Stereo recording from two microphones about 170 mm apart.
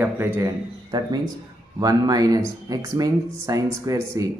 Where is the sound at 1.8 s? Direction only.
20° right (ahead or behind).